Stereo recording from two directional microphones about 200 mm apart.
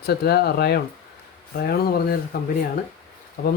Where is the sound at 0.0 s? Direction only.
55° left (ahead or behind).